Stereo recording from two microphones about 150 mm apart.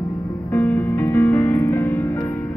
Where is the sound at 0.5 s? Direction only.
15° left (ahead or behind).